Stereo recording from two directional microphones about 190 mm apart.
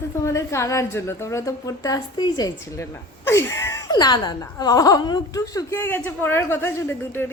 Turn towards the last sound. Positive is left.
turn(degrees=10)  # may be behind; listen again after turning